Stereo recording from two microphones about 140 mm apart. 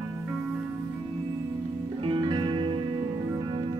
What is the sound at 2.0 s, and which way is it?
Music, 35° right (ahead or behind).